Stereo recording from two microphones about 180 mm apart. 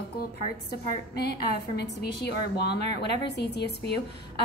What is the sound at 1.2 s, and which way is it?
A woman's voice, 65° left (ahead or behind).